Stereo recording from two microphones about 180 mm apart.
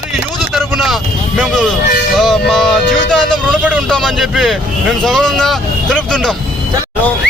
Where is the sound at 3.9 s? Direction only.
Centre (ahead or behind).